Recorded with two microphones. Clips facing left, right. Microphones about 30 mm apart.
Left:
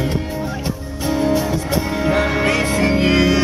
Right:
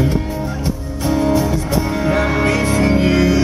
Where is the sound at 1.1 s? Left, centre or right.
Centre.